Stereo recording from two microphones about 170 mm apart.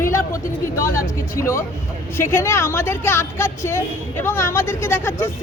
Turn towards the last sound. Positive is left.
turn(degrees=15)  # may be behind; listen again after turning